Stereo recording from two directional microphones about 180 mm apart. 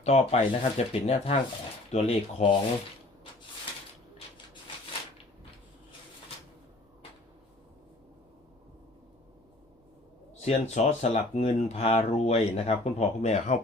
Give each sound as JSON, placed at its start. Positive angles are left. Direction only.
{"t": 0.0, "sound": "speech", "side_deg": 35}
{"t": 10.4, "sound": "speech", "side_deg": 35}